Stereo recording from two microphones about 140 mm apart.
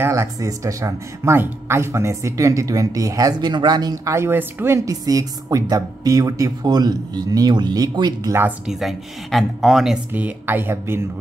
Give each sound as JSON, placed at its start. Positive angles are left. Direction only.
{"t": 0.0, "sound": "speech", "side_deg": -20}
{"t": 8.4, "sound": "speech", "side_deg": -10}
{"t": 8.7, "sound": "speech", "side_deg": 0}